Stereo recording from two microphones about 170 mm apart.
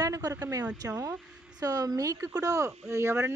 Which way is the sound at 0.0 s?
20° right (ahead or behind).